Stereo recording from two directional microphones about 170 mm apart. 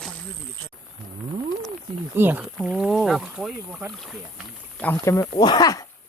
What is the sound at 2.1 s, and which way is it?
Speech, 10° right (ahead or behind).